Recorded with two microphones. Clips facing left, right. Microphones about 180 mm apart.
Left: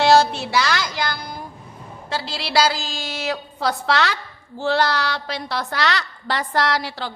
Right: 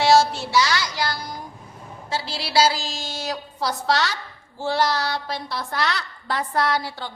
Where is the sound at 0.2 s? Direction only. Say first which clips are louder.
Left 1 dB; 60° left (ahead or behind).